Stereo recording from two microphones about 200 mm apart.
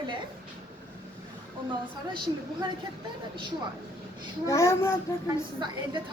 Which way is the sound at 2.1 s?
25° right (ahead or behind).